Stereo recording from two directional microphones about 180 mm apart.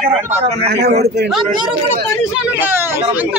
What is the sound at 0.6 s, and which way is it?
Speech, 65° right (ahead or behind).